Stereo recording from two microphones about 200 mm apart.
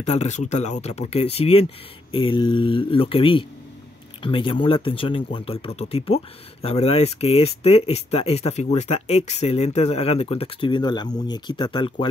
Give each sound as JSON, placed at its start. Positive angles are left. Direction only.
{"t": 0.0, "sound": "speech", "side_deg": 35}